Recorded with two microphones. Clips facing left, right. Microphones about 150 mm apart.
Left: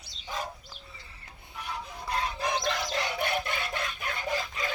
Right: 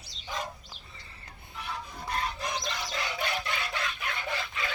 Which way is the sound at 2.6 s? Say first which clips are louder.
Left 4 dB; 60° left (ahead or behind).